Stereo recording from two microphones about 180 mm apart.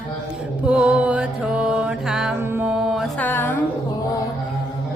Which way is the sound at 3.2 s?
10° left (ahead or behind).